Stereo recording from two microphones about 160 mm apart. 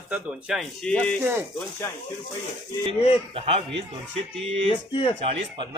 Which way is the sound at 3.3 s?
35° right (ahead or behind).